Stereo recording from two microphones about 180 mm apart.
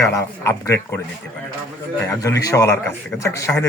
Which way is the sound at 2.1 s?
20° left (ahead or behind).